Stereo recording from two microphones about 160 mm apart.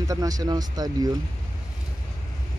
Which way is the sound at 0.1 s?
20° right (ahead or behind).